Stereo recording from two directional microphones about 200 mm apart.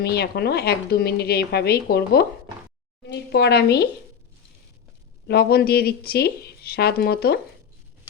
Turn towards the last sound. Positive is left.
turn(degrees=50)  # may be behind; listen again after turning